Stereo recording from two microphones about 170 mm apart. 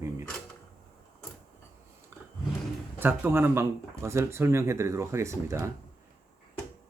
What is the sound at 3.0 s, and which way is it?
Speech, 15° right (ahead or behind).